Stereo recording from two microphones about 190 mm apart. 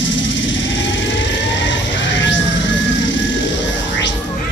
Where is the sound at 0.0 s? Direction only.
75° left (ahead or behind).